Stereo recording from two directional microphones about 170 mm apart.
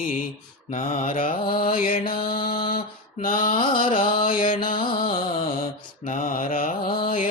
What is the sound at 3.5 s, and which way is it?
Carnatic music, 30° left (ahead or behind).